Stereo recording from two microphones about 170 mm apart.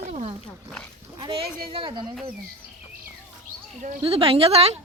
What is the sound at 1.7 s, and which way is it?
Speech, 30° right (ahead or behind).